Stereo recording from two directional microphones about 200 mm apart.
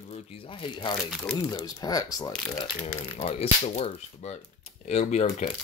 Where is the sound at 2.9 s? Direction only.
30° left (ahead or behind).